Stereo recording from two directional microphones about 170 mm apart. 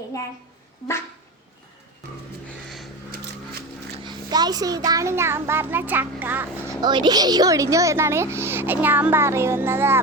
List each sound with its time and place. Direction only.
4.0 s speech: 25° right (ahead or behind)
6.8 s speech: 25° right (ahead or behind)